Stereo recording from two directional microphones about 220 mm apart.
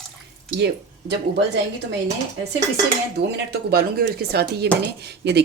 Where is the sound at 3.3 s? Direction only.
45° right (ahead or behind).